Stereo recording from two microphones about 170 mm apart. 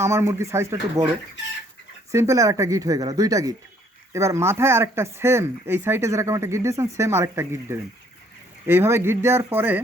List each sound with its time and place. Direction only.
0.0 s speech: 15° right (ahead or behind)
2.1 s speech: 15° right (ahead or behind)